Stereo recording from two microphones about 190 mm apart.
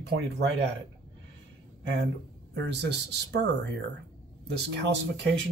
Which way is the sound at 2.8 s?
60° right (ahead or behind).